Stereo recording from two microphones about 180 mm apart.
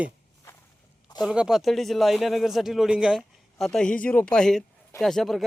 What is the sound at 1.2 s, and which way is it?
Speech, 5° right (ahead or behind).